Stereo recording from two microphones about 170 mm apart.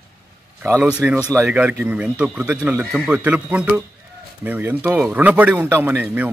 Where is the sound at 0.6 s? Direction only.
15° right (ahead or behind).